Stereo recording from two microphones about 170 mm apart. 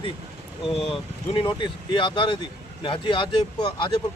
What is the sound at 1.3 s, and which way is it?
Speech, 30° left (ahead or behind).